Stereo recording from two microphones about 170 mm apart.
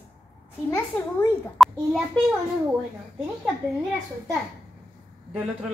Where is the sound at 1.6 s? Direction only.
Centre (ahead or behind).